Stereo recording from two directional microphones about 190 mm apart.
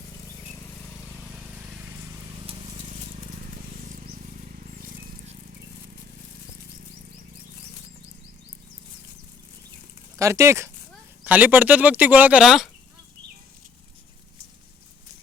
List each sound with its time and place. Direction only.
10.2 s speech: 15° right (ahead or behind)